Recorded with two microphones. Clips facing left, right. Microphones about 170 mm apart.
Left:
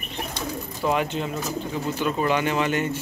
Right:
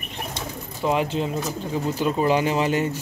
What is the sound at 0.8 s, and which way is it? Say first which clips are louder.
Speech: right 2 dB; 30° right (ahead or behind).